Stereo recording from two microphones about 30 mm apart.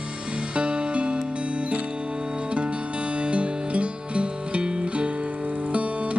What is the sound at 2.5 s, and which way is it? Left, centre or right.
Music, right.